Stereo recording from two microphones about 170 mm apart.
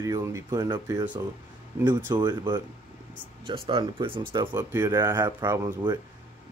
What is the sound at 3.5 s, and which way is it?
Speech, 30° right (ahead or behind).